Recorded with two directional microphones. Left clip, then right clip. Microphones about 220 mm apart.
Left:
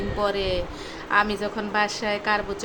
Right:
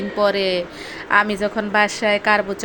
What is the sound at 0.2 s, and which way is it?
A woman's voice, 20° right (ahead or behind).